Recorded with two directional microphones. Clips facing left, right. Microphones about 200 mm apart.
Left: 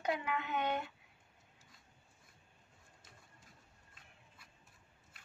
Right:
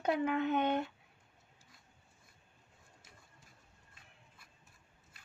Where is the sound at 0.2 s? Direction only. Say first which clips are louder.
Right 6 dB; 50° right (ahead or behind).